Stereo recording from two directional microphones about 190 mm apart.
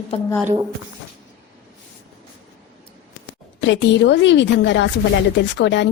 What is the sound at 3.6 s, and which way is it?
Speech, 75° left (ahead or behind).